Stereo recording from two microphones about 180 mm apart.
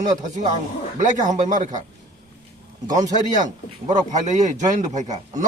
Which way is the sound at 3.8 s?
40° right (ahead or behind).